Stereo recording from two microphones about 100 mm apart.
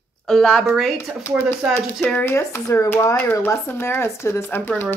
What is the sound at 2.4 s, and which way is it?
Speech, 30° left (ahead or behind).